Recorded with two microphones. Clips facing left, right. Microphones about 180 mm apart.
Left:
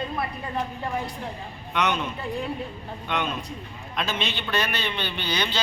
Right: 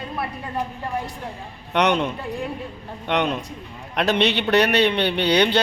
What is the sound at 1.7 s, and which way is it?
A man's voice, 70° right (ahead or behind).